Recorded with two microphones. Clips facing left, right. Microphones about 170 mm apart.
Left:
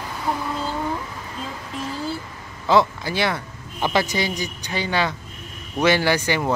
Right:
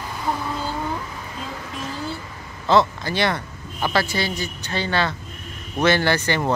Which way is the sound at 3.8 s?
20° left (ahead or behind).